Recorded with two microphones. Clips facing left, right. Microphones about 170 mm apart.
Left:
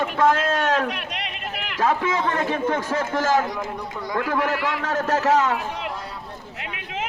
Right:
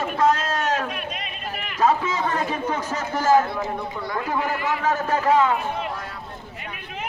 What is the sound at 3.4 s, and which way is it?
Speech, 15° left (ahead or behind).